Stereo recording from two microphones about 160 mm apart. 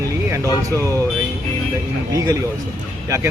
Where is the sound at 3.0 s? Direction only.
15° right (ahead or behind).